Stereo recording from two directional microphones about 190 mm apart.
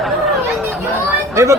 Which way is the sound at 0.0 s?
Centre (ahead or behind).